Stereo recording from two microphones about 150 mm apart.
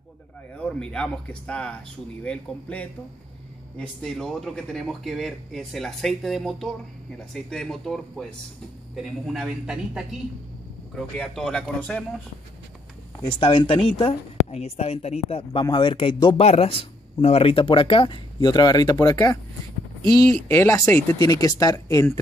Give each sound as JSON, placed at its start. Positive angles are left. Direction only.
{"t": 0.6, "sound": "speech", "side_deg": 5}
{"t": 13.2, "sound": "speech", "side_deg": 35}
{"t": 15.6, "sound": "speech", "side_deg": 30}
{"t": 20.4, "sound": "speech", "side_deg": 20}